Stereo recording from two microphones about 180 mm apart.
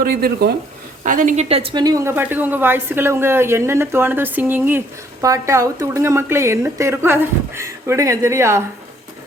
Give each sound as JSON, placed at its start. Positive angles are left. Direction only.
{"t": 0.0, "sound": "speech", "side_deg": -60}
{"t": 1.0, "sound": "a woman's voice", "side_deg": -45}